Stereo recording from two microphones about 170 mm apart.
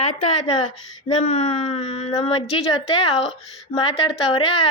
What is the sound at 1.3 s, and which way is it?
A woman's voice, 45° left (ahead or behind).